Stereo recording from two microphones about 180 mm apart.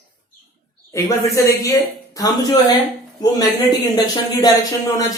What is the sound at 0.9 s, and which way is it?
Speech, 15° left (ahead or behind).